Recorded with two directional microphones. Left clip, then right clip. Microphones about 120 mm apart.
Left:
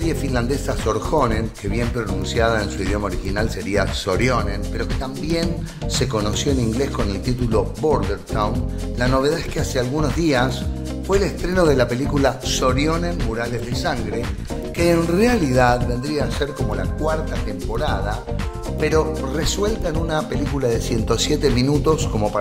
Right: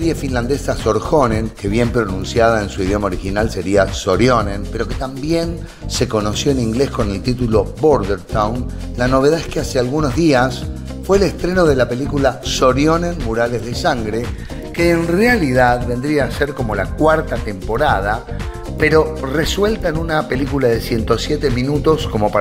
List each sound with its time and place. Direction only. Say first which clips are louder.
0.0 s speech: right 4 dB; 20° right (ahead or behind)
1.7 s speech: right 9 dB; 50° right (ahead or behind)
2.3 s speech: right 6 dB; 30° right (ahead or behind)
11.6 s speech: right 2 dB; 5° right (ahead or behind)
12.6 s speech: right 7 dB; 35° right (ahead or behind)
14.8 s speech: right 3 dB; centre (ahead or behind)
16.0 s speech: right 6 dB; 20° right (ahead or behind)
16.7 s speech: right 13 dB; 35° right (ahead or behind)
18.8 s speech: right 6 dB; 20° right (ahead or behind)
21.2 s speech: right 1 dB; 5° left (ahead or behind)
21.6 s speech: right 3 dB; 10° right (ahead or behind)